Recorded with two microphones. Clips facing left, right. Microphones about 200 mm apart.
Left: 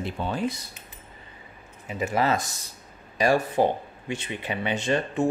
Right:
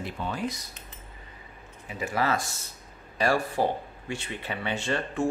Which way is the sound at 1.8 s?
20° left (ahead or behind).